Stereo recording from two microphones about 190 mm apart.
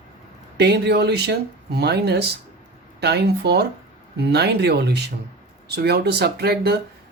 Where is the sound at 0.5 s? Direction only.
60° right (ahead or behind).